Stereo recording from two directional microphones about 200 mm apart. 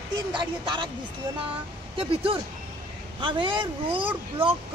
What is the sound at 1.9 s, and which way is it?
Speech, 25° right (ahead or behind).